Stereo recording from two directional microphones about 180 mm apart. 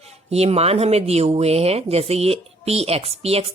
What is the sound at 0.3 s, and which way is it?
Speech, 35° right (ahead or behind).